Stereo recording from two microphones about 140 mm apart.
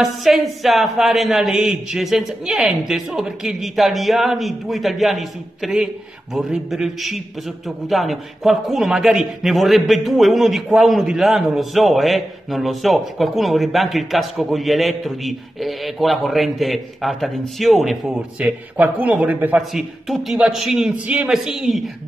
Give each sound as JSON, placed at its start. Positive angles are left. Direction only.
{"t": 0.0, "sound": "a man's voice", "side_deg": 0}